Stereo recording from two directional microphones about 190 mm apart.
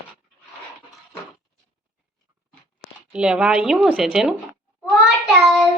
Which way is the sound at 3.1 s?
5° right (ahead or behind).